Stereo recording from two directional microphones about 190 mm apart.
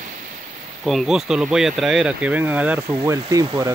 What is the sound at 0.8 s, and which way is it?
Speech, centre (ahead or behind).